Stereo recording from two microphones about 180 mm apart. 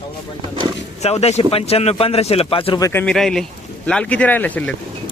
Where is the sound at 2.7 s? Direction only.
20° left (ahead or behind).